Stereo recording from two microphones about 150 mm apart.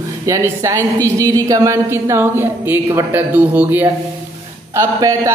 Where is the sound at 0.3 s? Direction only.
20° right (ahead or behind).